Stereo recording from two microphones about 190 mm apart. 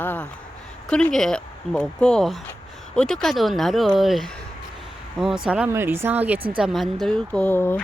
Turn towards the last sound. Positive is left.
turn(degrees=10)  # may be behind; listen again after turning